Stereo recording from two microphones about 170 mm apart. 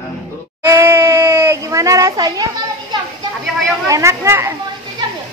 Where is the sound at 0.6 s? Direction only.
15° right (ahead or behind).